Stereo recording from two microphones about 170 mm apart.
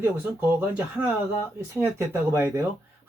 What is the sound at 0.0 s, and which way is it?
Speech, 15° right (ahead or behind).